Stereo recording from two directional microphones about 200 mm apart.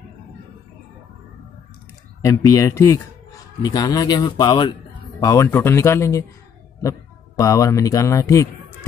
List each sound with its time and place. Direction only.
2.2 s speech: 15° left (ahead or behind)